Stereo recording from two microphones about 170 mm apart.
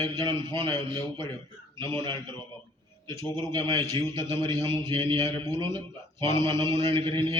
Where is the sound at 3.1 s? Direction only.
15° left (ahead or behind).